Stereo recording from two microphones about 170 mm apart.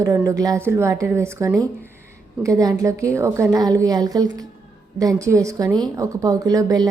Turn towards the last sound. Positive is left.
turn(degrees=-20)  # may be behind; listen again after turning